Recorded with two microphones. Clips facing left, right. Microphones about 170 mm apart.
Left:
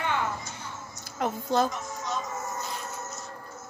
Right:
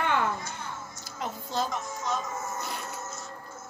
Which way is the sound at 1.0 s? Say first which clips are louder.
Left 7 dB; 55° left (ahead or behind).